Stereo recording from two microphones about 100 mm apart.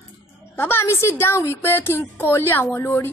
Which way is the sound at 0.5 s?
20° left (ahead or behind).